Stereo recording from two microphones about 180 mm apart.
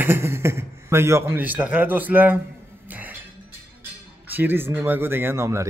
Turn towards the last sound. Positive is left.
turn(degrees=-15)  # may be behind; listen again after turning